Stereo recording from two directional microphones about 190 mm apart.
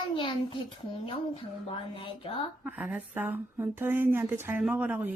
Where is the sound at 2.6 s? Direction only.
5° right (ahead or behind).